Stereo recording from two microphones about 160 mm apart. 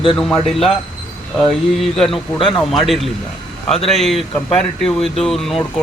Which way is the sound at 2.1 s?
30° left (ahead or behind).